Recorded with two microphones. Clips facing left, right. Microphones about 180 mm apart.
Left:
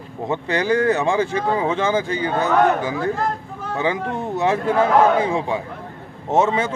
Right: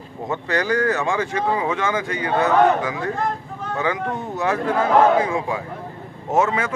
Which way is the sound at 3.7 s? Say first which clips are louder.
Left 1 dB; 25° left (ahead or behind).